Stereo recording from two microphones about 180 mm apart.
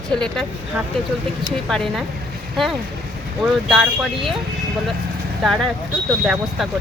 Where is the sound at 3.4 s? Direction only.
Centre (ahead or behind).